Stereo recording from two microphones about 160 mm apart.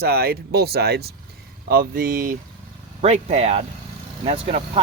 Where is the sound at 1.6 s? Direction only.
70° right (ahead or behind).